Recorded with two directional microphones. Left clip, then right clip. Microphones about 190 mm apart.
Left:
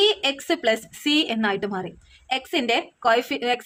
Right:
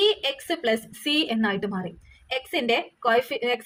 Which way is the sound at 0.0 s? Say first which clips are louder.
Left 2 dB; 30° left (ahead or behind).